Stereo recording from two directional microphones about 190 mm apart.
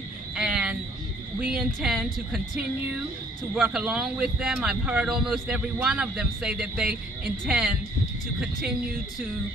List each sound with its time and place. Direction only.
0.4 s a sound: 5° right (ahead or behind)
1.4 s speech: 5° right (ahead or behind)
3.5 s speech: 5° right (ahead or behind)